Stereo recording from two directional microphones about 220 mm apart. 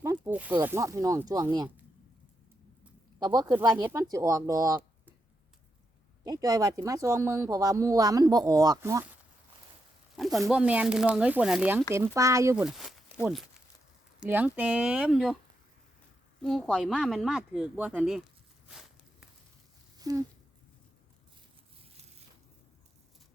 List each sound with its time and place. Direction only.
0.0 s speech: 10° right (ahead or behind)
3.2 s speech: 20° right (ahead or behind)
6.2 s speech: 15° right (ahead or behind)
10.2 s speech: centre (ahead or behind)
12.6 s speech: centre (ahead or behind)
16.4 s speech: centre (ahead or behind)
18.7 s walk: centre (ahead or behind)
20.0 s speech: 15° right (ahead or behind)